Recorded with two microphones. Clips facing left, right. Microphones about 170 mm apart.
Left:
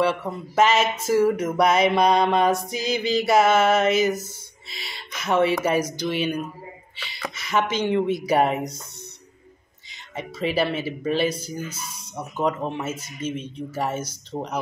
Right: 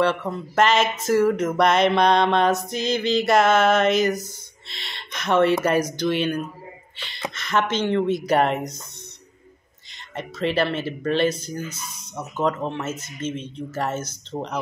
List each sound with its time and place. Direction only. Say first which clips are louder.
0.0 s speech: right 1 dB; 5° left (ahead or behind)
9.8 s speech: right 1 dB; 5° left (ahead or behind)